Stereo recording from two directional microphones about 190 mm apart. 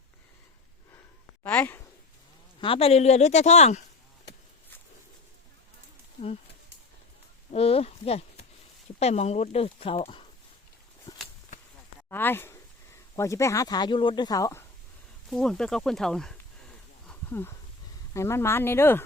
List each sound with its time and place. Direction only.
1.5 s a sound: 10° left (ahead or behind)
2.6 s speech: 30° left (ahead or behind)
7.5 s speech: 30° left (ahead or behind)
12.0 s speech: 10° left (ahead or behind)
15.3 s speech: 5° left (ahead or behind)
17.1 s a sound: 10° left (ahead or behind)
18.1 s speech: 15° left (ahead or behind)